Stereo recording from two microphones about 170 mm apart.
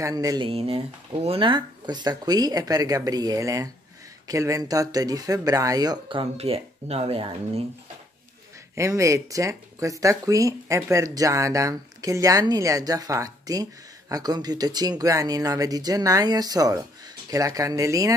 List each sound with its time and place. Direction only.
0.0 s speech: 20° right (ahead or behind)
0.5 s speech: 35° right (ahead or behind)
8.7 s speech: 20° right (ahead or behind)